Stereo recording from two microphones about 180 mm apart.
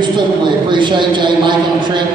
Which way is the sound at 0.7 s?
25° right (ahead or behind).